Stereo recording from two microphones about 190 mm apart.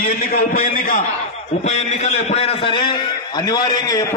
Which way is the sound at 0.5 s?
45° left (ahead or behind).